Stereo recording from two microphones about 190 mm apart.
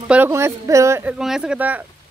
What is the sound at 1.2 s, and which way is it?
Speech, 5° right (ahead or behind).